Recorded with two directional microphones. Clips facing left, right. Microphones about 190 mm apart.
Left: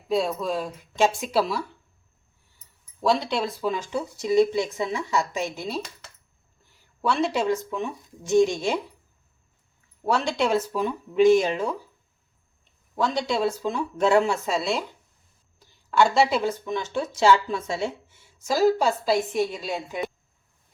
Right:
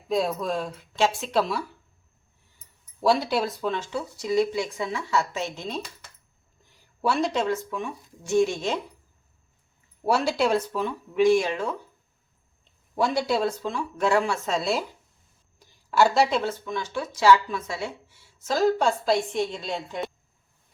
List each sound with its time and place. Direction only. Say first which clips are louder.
0.1 s speech: left 1 dB; centre (ahead or behind)
0.7 s speech: left 2 dB; 15° left (ahead or behind)
3.0 s speech: right 1 dB; 5° right (ahead or behind)
3.8 s speech: left 2 dB; 20° left (ahead or behind)
7.0 s speech: even; centre (ahead or behind)
7.4 s speech: left 2 dB; 20° left (ahead or behind)
10.1 s speech: right 1 dB; 5° right (ahead or behind); by 10.9 s 10° left (ahead or behind)
11.1 s speech: left 3 dB; 25° left (ahead or behind)
13.0 s speech: right 1 dB; 10° right (ahead or behind)
13.7 s speech: left 3 dB; 20° left (ahead or behind)
14.4 s speech: even; 5° left (ahead or behind)
15.5 s a sound: even; 10° right (ahead or behind)
16.4 s speech: left 3 dB; 15° left (ahead or behind)
18.4 s speech: left 1 dB; 5° left (ahead or behind)